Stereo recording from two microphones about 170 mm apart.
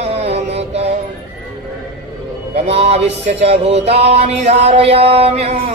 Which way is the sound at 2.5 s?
40° right (ahead or behind).